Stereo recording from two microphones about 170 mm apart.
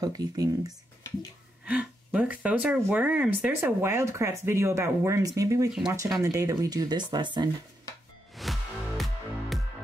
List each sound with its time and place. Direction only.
0.0 s speech: 20° right (ahead or behind)
1.7 s speech: 10° right (ahead or behind); by 7.4 s 25° right (ahead or behind)
8.4 s music: centre (ahead or behind)